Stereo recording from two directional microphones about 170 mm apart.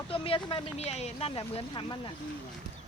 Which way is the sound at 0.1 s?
30° left (ahead or behind).